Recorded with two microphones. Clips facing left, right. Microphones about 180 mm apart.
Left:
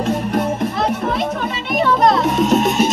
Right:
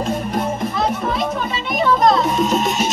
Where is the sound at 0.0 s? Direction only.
65° left (ahead or behind).